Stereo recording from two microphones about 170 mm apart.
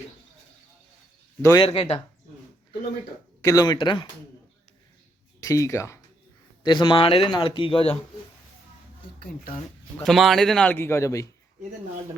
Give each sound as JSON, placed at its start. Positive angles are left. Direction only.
{"t": 1.4, "sound": "speech", "side_deg": 15}
{"t": 1.6, "sound": "speech", "side_deg": 35}
{"t": 3.4, "sound": "speech", "side_deg": 20}
{"t": 5.4, "sound": "speech", "side_deg": 20}
{"t": 10.0, "sound": "a man's voice", "side_deg": 0}